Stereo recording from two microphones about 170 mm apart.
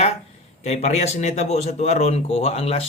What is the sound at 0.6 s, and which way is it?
A man's voice, 40° left (ahead or behind).